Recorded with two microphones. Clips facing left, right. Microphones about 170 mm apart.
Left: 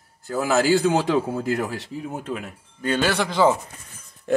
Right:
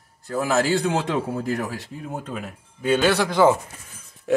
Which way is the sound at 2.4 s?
Centre (ahead or behind).